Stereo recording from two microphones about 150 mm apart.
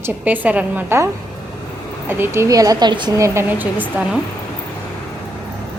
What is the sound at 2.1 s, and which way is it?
Speech, 15° right (ahead or behind).